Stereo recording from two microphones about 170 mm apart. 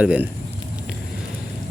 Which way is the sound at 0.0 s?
5° right (ahead or behind).